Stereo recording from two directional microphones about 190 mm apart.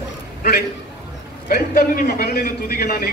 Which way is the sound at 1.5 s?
50° left (ahead or behind).